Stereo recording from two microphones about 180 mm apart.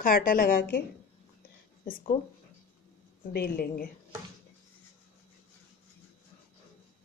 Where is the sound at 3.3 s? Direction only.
60° left (ahead or behind).